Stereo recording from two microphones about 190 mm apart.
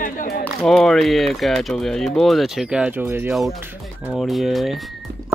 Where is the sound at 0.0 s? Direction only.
50° left (ahead or behind).